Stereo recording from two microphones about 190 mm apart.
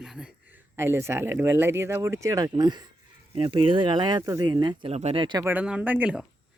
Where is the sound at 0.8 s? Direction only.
15° right (ahead or behind).